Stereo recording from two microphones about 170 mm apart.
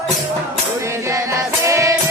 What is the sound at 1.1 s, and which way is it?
Music, 15° right (ahead or behind).